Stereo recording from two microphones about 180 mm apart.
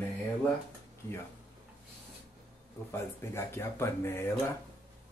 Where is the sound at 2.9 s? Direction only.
15° left (ahead or behind).